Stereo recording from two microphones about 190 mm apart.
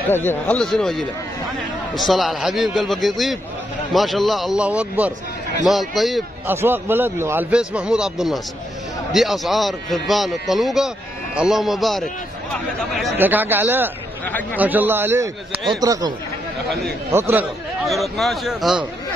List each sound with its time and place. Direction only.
0.1 s a man's voice: 10° left (ahead or behind)
6.4 s a man's voice: 10° right (ahead or behind)
13.2 s a man's voice: 10° right (ahead or behind)
14.2 s speech: 10° left (ahead or behind)
14.6 s a man's voice: 10° right (ahead or behind)
17.1 s a man's voice: 10° right (ahead or behind)
17.8 s a man's voice: centre (ahead or behind)